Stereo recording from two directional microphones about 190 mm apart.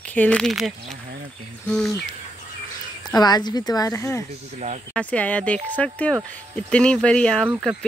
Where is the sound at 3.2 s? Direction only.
20° left (ahead or behind).